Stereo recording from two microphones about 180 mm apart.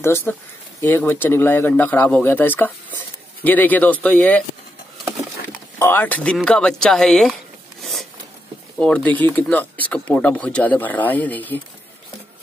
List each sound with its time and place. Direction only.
0.0 s speech: 15° left (ahead or behind)
5.8 s speech: 10° left (ahead or behind)
7.8 s zipper: centre (ahead or behind)
8.7 s speech: 5° left (ahead or behind)